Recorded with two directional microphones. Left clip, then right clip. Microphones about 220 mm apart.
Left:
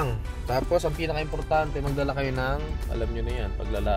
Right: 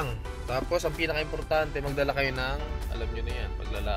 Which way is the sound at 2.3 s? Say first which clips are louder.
Left 3 dB; 20° left (ahead or behind).